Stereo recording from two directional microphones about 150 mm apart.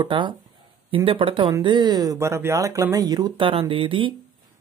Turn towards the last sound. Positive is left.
turn(degrees=-35)  # may be behind; listen again after turning